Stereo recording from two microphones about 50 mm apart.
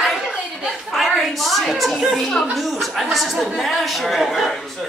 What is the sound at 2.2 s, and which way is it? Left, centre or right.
A man's voice, centre.